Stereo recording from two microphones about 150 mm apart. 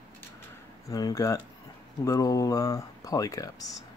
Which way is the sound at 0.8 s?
25° left (ahead or behind).